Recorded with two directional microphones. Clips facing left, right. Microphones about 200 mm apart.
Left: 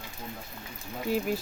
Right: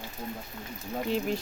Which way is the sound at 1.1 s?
5° left (ahead or behind).